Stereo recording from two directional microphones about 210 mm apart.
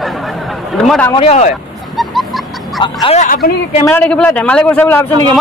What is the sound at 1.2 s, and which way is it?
Speech, 30° left (ahead or behind).